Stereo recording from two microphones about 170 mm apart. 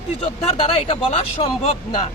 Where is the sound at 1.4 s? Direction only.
35° left (ahead or behind).